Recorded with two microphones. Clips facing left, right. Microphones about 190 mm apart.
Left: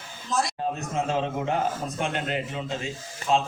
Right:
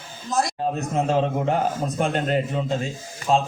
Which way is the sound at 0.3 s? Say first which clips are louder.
Right 3 dB; 40° right (ahead or behind).